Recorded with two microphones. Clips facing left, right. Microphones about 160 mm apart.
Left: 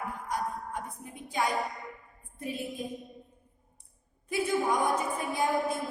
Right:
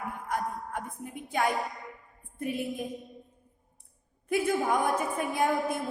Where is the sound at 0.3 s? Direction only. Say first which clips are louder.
Right 2 dB; 55° right (ahead or behind).